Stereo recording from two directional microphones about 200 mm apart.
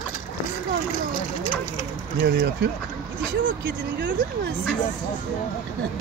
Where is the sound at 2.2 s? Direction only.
55° right (ahead or behind).